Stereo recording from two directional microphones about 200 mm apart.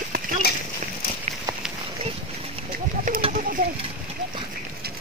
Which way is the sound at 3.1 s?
40° right (ahead or behind).